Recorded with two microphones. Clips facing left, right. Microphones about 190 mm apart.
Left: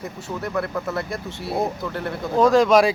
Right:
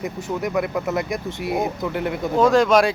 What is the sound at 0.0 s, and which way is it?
Speech, 15° right (ahead or behind).